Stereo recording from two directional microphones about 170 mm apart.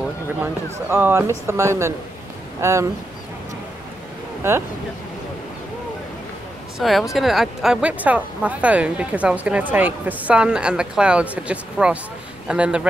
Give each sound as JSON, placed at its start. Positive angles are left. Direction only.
{"t": 0.4, "sound": "speech", "side_deg": -15}
{"t": 4.4, "sound": "speech", "side_deg": -15}
{"t": 6.8, "sound": "a man's voice", "side_deg": 0}